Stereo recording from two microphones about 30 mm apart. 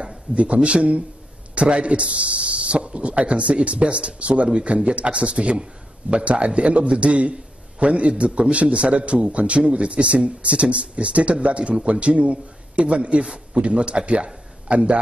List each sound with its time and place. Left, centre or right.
0.3 s a man's voice: right
13.2 s a man's voice: right
13.6 s speech: right